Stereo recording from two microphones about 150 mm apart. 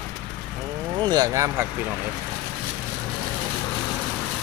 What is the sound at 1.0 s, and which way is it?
Vehicle, 30° right (ahead or behind).